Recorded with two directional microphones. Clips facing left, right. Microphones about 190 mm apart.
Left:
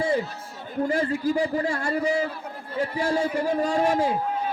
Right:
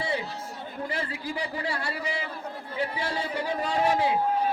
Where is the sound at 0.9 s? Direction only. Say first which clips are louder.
Left 11 dB; 45° left (ahead or behind).